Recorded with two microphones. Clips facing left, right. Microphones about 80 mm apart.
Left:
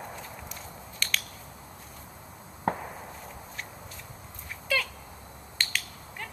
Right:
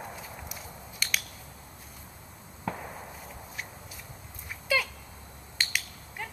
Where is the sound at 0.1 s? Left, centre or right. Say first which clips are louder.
Left 1 dB; centre.